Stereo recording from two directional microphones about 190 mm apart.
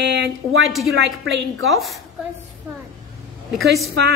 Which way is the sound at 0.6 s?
Centre (ahead or behind).